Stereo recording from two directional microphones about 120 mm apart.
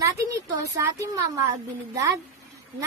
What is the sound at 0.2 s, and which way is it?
A woman's voice, 25° right (ahead or behind).